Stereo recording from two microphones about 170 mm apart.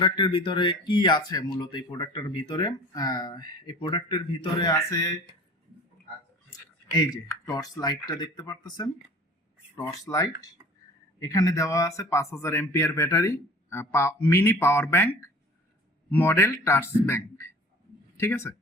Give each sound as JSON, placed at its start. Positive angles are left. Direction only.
{"t": 0.0, "sound": "speech", "side_deg": 30}
{"t": 4.8, "sound": "speech", "side_deg": 15}
{"t": 6.9, "sound": "speech", "side_deg": 20}